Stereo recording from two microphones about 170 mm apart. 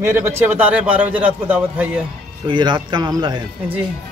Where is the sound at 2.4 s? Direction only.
25° right (ahead or behind).